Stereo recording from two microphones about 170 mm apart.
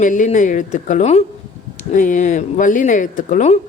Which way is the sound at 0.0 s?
50° left (ahead or behind).